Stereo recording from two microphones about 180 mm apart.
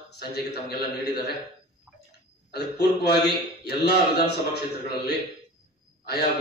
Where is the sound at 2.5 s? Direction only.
65° left (ahead or behind).